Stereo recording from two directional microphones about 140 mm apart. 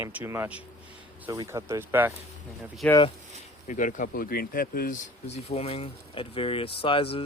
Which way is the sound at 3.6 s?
60° left (ahead or behind).